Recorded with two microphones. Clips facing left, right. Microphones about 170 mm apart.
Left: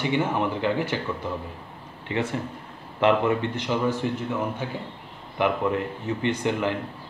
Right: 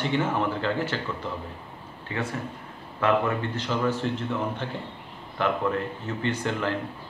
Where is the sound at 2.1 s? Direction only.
20° left (ahead or behind).